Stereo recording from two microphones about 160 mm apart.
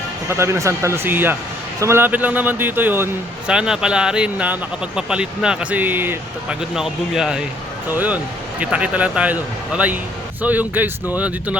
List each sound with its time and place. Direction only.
0.3 s a man's voice: 15° right (ahead or behind)